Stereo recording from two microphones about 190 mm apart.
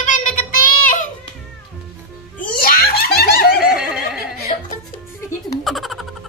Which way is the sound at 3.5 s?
Centre (ahead or behind).